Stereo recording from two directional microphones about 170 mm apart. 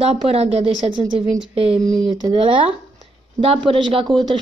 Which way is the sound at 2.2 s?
30° right (ahead or behind).